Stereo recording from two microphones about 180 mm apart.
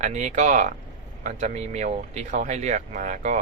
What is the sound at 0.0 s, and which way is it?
Speech, 40° right (ahead or behind).